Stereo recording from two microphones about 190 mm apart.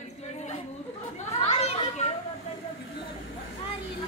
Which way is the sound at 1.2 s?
35° left (ahead or behind).